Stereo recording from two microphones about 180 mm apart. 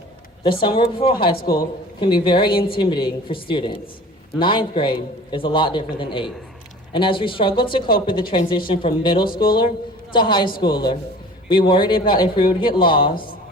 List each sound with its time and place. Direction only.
0.6 s a man's voice: 30° left (ahead or behind)